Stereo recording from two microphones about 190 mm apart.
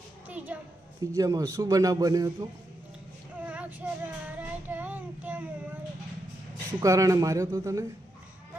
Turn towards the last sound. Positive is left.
turn(degrees=-15)  # may be behind; listen again after turning